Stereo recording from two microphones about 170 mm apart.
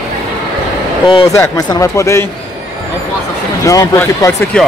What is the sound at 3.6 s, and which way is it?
Speech, 20° left (ahead or behind).